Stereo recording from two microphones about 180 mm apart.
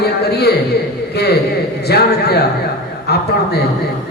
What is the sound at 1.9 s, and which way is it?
A man's voice, 65° left (ahead or behind).